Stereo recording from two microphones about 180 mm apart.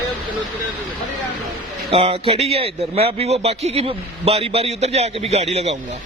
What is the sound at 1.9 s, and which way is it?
Speech, 35° right (ahead or behind).